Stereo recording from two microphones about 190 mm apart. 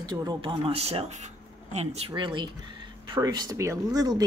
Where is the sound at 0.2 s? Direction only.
25° right (ahead or behind).